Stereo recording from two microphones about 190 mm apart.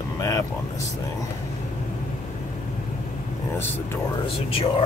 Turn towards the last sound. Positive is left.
turn(degrees=30)  # may be behind; listen again after turning